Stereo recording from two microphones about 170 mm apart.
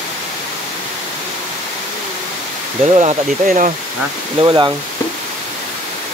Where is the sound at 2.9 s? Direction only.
45° right (ahead or behind).